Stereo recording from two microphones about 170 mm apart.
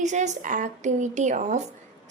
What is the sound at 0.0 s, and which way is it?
A woman's voice, 45° right (ahead or behind).